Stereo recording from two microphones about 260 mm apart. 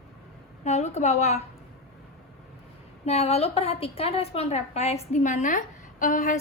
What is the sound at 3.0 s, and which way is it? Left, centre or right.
A woman's voice, left.